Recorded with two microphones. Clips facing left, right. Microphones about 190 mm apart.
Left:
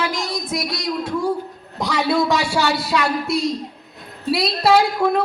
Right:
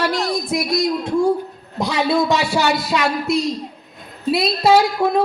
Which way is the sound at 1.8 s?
25° right (ahead or behind).